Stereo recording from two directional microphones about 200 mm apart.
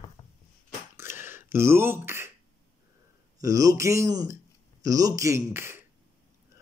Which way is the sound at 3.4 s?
15° right (ahead or behind).